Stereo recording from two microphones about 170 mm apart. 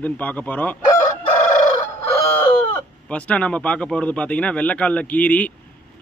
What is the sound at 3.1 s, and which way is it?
A man's voice, 5° left (ahead or behind).